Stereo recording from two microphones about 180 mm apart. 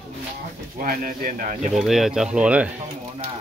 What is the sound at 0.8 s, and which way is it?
Speech, 55° right (ahead or behind).